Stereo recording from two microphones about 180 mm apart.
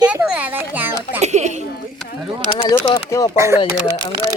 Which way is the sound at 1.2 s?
40° right (ahead or behind).